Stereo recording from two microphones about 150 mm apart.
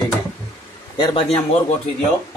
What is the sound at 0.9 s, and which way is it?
Speech, 35° left (ahead or behind).